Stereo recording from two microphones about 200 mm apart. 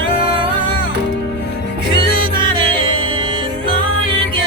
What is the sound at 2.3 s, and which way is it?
Music, 25° right (ahead or behind).